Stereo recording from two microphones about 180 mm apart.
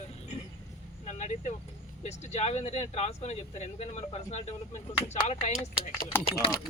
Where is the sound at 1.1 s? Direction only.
40° left (ahead or behind).